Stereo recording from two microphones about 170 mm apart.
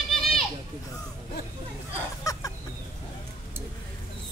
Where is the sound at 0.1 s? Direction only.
Centre (ahead or behind).